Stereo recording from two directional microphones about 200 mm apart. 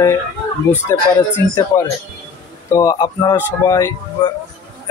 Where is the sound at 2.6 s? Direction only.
15° left (ahead or behind).